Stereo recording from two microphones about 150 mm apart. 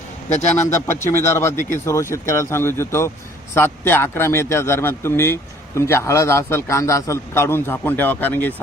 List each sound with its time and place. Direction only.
0.5 s speech: 15° left (ahead or behind)